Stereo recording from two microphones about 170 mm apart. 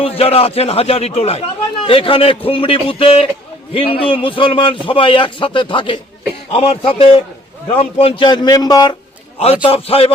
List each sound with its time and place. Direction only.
0.0 s speech: 35° left (ahead or behind)
9.4 s speech: 35° left (ahead or behind)